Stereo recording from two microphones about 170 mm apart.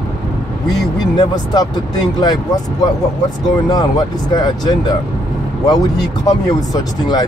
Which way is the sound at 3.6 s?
20° left (ahead or behind).